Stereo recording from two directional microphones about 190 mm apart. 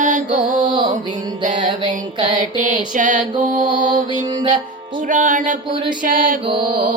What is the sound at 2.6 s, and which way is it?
Female singing, 40° right (ahead or behind).